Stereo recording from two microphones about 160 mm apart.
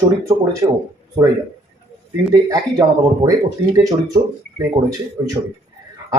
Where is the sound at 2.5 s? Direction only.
25° right (ahead or behind).